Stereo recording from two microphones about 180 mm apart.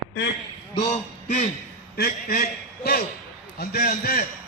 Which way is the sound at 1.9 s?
55° left (ahead or behind).